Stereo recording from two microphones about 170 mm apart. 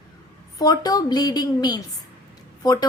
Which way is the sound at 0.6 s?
20° left (ahead or behind).